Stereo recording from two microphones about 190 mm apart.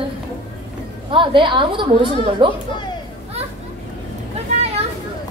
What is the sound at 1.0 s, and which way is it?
A woman's voice, 25° right (ahead or behind).